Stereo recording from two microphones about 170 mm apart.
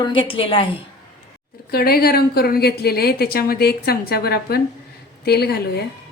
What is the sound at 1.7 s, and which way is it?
A woman's voice, 65° left (ahead or behind).